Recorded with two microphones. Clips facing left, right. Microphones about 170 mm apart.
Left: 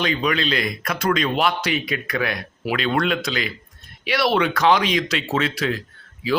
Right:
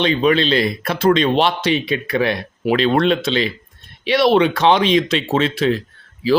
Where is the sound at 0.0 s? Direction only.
25° right (ahead or behind).